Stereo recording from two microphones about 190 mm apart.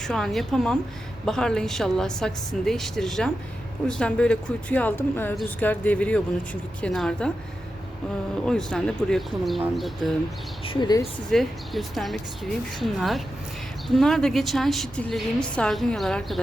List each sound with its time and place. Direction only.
0.0 s a woman's voice: centre (ahead or behind)
8.4 s a woman's voice: 5° left (ahead or behind)
10.7 s speech: 25° left (ahead or behind)
11.3 s a woman's voice: centre (ahead or behind)